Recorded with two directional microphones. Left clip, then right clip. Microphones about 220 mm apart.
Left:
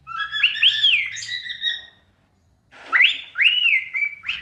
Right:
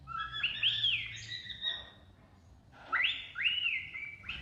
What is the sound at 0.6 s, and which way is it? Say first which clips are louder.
Bird: left 14 dB; 45° left (ahead or behind).